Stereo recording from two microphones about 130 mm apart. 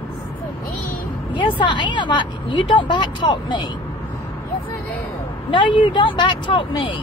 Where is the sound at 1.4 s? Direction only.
40° left (ahead or behind).